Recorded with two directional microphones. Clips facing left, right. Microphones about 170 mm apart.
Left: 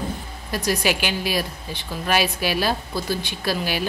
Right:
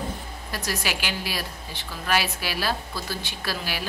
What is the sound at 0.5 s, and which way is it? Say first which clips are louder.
A woman's voice: left 8 dB; 15° left (ahead or behind).